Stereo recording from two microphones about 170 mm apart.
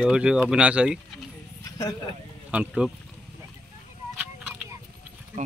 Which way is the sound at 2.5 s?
5° right (ahead or behind).